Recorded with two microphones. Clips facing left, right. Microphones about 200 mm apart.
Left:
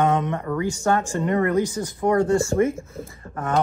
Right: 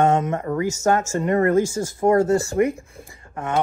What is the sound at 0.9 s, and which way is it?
Speech, 45° right (ahead or behind).